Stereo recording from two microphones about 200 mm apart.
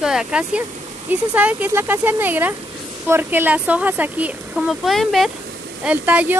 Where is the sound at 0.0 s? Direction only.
5° right (ahead or behind).